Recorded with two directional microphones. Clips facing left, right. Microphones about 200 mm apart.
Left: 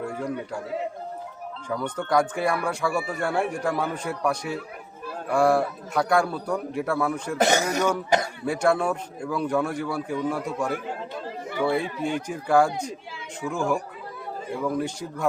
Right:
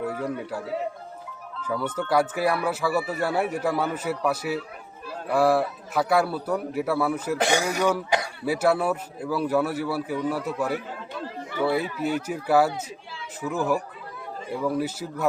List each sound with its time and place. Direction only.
0.0 s a man's voice: 5° right (ahead or behind)
1.6 s speech: 5° right (ahead or behind)
7.3 s speech: 45° left (ahead or behind)
7.8 s speech: 5° right (ahead or behind)